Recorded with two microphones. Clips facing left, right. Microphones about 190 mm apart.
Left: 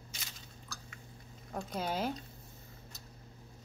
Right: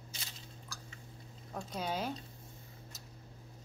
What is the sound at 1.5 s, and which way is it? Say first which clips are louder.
Speech: left 2 dB; 5° left (ahead or behind).